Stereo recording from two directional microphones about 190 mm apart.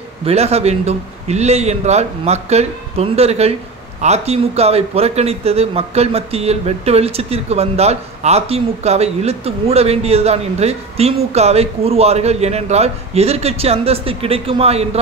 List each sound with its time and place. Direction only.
0.2 s a man's voice: 35° right (ahead or behind)